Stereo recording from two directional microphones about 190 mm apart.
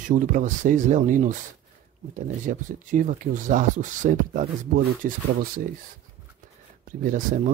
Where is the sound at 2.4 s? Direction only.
45° right (ahead or behind).